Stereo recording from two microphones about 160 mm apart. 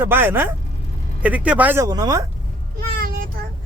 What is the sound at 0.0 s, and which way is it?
Speech, 15° right (ahead or behind).